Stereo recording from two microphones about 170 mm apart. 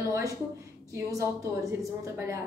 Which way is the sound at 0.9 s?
20° right (ahead or behind).